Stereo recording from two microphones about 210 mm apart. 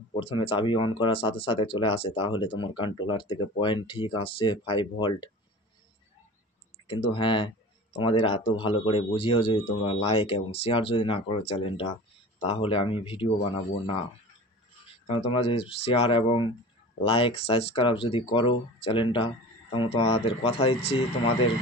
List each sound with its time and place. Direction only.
0.1 s speech: 25° left (ahead or behind)
6.9 s speech: 25° left (ahead or behind)
15.0 s speech: 25° left (ahead or behind)